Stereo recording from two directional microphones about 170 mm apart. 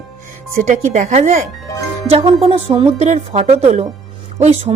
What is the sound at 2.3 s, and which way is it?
Speech, 35° right (ahead or behind).